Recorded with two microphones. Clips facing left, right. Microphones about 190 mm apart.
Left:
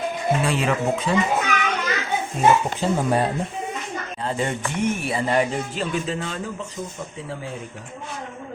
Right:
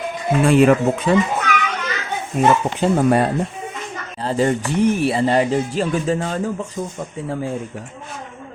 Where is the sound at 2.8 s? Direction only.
65° right (ahead or behind).